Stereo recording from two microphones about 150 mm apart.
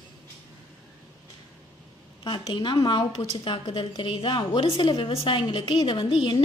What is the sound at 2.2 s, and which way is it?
A woman's voice, 35° left (ahead or behind).